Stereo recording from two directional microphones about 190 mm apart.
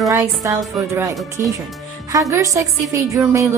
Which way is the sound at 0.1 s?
15° right (ahead or behind).